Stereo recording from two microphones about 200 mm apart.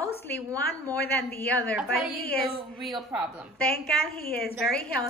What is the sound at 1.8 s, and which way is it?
A woman's voice, centre (ahead or behind).